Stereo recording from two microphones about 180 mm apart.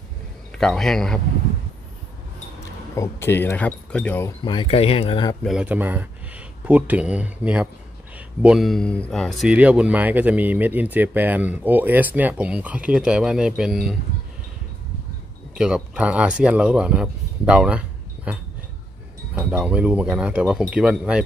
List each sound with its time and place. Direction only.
0.5 s a man's voice: 5° left (ahead or behind)
3.0 s speech: 15° left (ahead or behind)
4.5 s speech: 30° left (ahead or behind)
5.4 s speech: 5° right (ahead or behind)
15.5 s speech: 5° right (ahead or behind)